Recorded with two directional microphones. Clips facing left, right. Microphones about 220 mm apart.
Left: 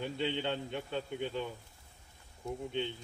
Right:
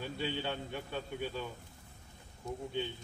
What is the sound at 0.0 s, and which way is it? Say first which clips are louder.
Speech: left 3 dB; 20° left (ahead or behind).